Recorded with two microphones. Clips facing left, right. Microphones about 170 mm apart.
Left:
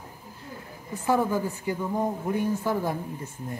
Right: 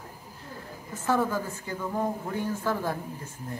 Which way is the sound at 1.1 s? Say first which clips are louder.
Left 2 dB; 15° left (ahead or behind).